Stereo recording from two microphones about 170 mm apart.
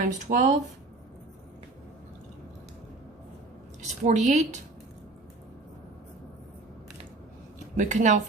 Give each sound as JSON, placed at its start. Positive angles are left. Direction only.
{"t": 0.0, "sound": "speech", "side_deg": -55}
{"t": 3.8, "sound": "speech", "side_deg": -45}
{"t": 7.8, "sound": "speech", "side_deg": -45}